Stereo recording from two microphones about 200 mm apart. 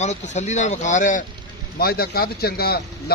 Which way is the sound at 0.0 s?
35° left (ahead or behind).